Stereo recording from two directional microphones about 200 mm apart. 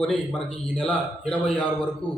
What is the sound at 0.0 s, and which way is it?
A man's voice, 5° left (ahead or behind).